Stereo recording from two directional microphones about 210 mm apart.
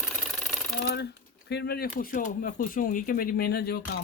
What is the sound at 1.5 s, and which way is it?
Speech, 50° left (ahead or behind).